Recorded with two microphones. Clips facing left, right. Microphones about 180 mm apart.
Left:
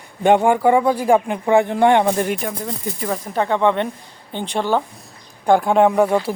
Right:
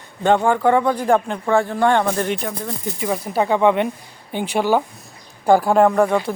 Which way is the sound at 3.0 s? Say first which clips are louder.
Right 2 dB; 10° right (ahead or behind).